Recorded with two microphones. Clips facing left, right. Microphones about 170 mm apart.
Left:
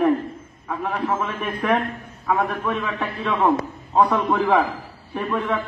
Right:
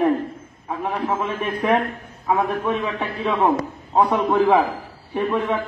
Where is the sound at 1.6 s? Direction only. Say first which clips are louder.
Right 1 dB; 30° right (ahead or behind).